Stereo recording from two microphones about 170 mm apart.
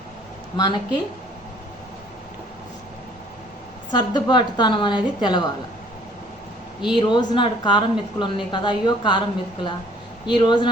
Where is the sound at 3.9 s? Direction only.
25° left (ahead or behind).